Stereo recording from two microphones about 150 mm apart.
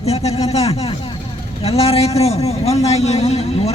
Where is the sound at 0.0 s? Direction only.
40° left (ahead or behind).